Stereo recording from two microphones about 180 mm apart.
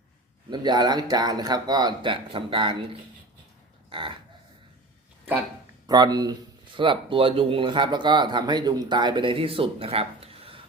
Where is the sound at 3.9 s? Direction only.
30° right (ahead or behind).